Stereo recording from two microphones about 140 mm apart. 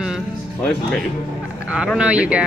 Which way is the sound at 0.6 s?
5° left (ahead or behind).